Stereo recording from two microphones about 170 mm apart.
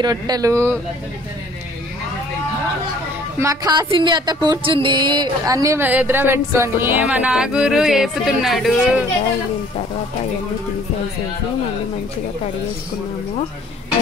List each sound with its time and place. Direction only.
0.0 s speech: 25° right (ahead or behind)
3.3 s speech: 20° right (ahead or behind); by 9.0 s centre (ahead or behind)